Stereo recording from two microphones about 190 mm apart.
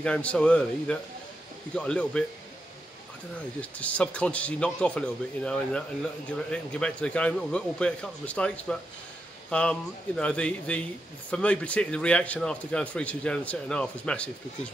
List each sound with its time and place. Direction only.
0.0 s speech: 5° left (ahead or behind)
3.8 s speech: 5° left (ahead or behind)